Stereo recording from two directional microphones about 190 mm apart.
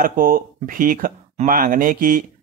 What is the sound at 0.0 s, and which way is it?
Speech, 45° right (ahead or behind).